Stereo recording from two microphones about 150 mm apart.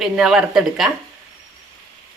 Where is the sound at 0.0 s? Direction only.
5° right (ahead or behind).